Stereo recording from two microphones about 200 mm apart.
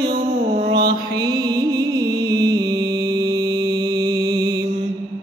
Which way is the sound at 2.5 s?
20° right (ahead or behind).